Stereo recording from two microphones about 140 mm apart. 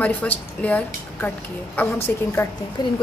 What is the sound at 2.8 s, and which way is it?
Speech, 30° left (ahead or behind).